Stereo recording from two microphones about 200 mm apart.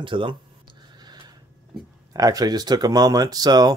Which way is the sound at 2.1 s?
20° right (ahead or behind).